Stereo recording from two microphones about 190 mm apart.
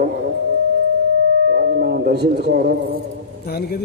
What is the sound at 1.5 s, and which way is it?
Speech, 50° right (ahead or behind).